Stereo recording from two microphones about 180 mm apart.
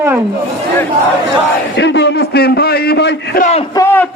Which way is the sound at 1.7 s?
70° left (ahead or behind).